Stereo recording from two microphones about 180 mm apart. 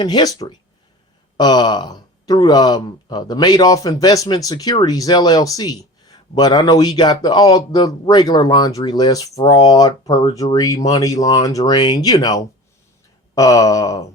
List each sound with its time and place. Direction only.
0.0 s speech: 20° left (ahead or behind)